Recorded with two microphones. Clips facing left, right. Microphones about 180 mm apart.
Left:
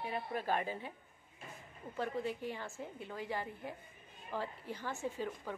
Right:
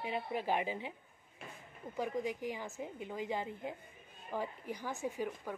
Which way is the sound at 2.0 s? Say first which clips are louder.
Right 1 dB; 15° right (ahead or behind).